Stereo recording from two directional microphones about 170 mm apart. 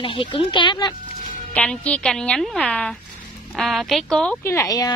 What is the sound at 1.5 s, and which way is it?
A woman's voice, 5° left (ahead or behind).